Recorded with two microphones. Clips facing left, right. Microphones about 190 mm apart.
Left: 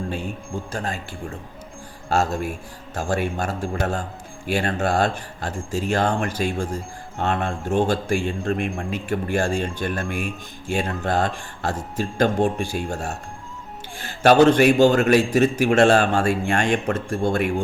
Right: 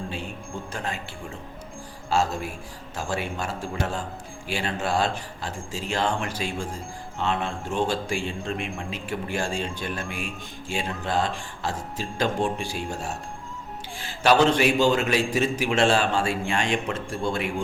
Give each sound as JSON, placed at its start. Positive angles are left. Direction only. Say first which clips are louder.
{"t": 0.7, "sound": "speech", "louder": "left 3 dB", "side_deg": 40}
{"t": 2.0, "sound": "a man's voice", "louder": "left 3 dB", "side_deg": 50}